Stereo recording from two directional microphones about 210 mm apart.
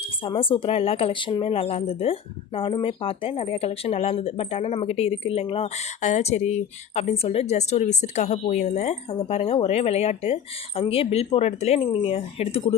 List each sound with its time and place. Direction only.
0.3 s speech: 25° left (ahead or behind)